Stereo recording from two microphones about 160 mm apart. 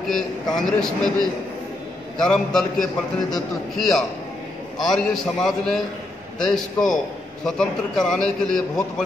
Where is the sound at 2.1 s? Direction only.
5° left (ahead or behind).